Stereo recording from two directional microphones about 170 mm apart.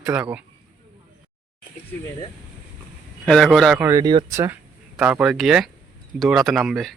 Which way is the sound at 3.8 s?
15° right (ahead or behind).